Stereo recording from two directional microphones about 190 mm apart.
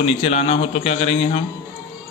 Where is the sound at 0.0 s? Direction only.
30° left (ahead or behind).